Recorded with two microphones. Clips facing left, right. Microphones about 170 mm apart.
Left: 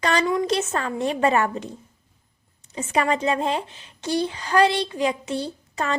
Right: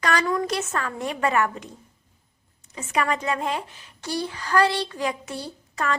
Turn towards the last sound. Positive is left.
turn(degrees=25)  # may be behind; listen again after turning